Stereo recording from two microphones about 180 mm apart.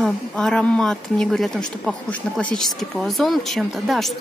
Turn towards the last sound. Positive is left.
turn(degrees=0)  # may be behind; listen again after turning